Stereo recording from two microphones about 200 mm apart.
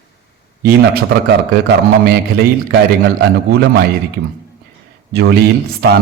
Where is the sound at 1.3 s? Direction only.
55° right (ahead or behind).